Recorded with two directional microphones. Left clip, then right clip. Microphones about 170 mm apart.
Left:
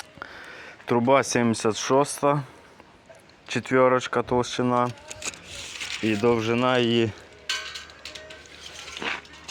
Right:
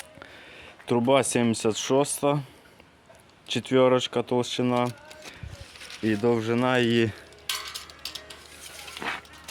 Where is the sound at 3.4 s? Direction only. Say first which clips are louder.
Left 1 dB; 5° left (ahead or behind).